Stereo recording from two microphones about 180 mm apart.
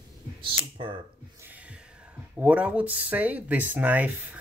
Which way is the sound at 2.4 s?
5° right (ahead or behind).